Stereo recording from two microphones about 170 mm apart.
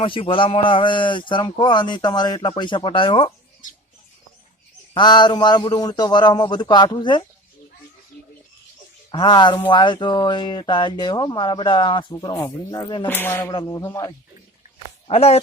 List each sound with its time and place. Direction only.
0.0 s speech: 30° left (ahead or behind)
4.9 s speech: 25° left (ahead or behind)
9.1 s speech: 25° left (ahead or behind)
13.1 s music: 10° left (ahead or behind)
13.5 s speech: 25° left (ahead or behind)
15.0 s speech: 35° left (ahead or behind)